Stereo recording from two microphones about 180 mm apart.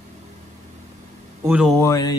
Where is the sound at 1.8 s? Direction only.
20° left (ahead or behind).